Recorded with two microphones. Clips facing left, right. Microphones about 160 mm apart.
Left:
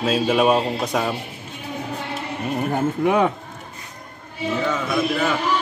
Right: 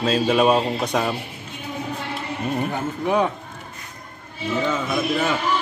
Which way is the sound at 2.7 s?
60° left (ahead or behind).